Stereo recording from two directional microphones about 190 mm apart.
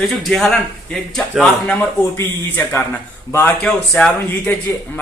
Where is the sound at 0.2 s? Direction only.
Centre (ahead or behind).